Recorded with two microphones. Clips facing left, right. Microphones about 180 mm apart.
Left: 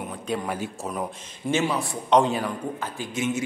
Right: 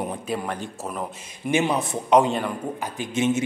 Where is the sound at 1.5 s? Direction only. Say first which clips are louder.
Right 2 dB; 15° right (ahead or behind).